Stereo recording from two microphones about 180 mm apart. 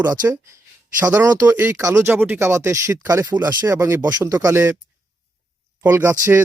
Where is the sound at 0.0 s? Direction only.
20° right (ahead or behind).